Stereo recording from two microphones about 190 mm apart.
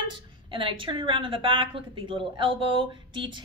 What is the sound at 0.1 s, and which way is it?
A woman's voice, 25° right (ahead or behind).